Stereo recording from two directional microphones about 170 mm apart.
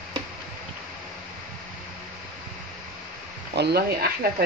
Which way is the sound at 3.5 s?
75° right (ahead or behind).